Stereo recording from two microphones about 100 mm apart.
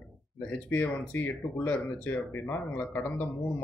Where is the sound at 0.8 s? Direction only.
20° left (ahead or behind).